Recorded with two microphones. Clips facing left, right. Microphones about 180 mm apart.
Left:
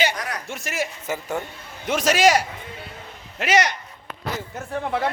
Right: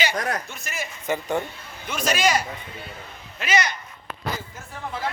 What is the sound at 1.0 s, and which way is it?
Speech, 5° left (ahead or behind).